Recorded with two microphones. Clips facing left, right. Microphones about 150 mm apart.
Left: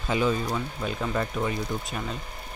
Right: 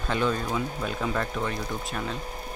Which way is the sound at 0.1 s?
5° left (ahead or behind).